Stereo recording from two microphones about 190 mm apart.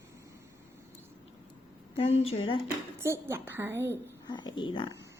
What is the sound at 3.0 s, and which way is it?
A woman's voice, 15° right (ahead or behind).